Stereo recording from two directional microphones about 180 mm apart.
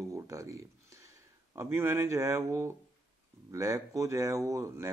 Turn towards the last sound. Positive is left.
turn(degrees=-15)  # may be behind; listen again after turning